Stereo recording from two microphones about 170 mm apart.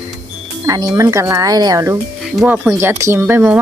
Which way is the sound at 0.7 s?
20° right (ahead or behind).